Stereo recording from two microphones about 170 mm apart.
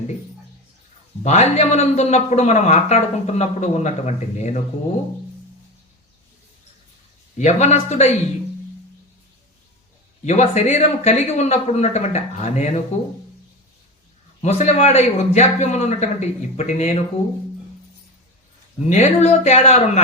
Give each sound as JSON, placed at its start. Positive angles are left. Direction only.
{"t": 1.2, "sound": "a man's voice", "side_deg": 40}
{"t": 7.3, "sound": "a man's voice", "side_deg": 40}
{"t": 10.2, "sound": "a man's voice", "side_deg": 40}
{"t": 14.4, "sound": "a man's voice", "side_deg": 40}
{"t": 18.9, "sound": "a man's voice", "side_deg": 40}